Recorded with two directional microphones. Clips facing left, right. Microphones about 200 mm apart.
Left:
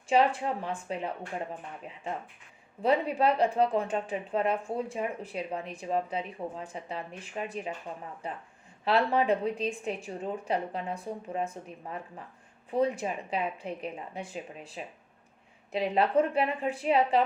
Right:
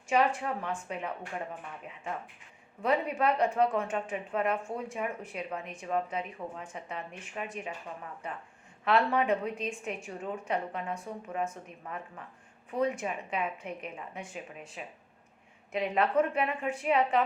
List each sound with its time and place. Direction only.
0.3 s speech: 30° left (ahead or behind)
2.8 s speech: 30° left (ahead or behind)